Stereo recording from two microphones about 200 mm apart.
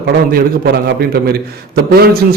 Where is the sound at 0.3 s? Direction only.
45° right (ahead or behind).